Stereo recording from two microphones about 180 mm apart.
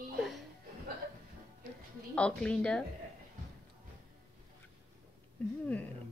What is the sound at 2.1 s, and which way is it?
Speech, 5° left (ahead or behind).